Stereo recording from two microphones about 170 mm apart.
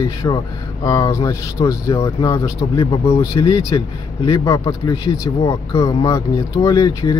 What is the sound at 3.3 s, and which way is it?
Speech, 20° left (ahead or behind).